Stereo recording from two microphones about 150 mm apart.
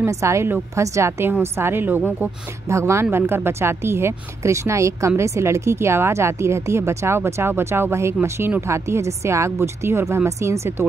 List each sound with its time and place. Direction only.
0.0 s a woman's voice: 20° right (ahead or behind)